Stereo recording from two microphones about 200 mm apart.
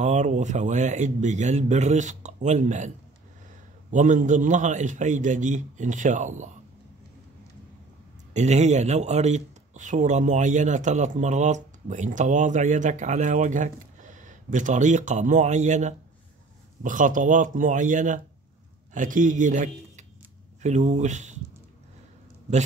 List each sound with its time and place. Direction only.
0.0 s speech: 35° right (ahead or behind)
3.9 s speech: 40° right (ahead or behind)
8.3 s speech: 35° right (ahead or behind)